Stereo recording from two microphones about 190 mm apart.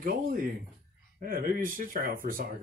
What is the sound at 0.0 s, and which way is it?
Speech, 50° right (ahead or behind).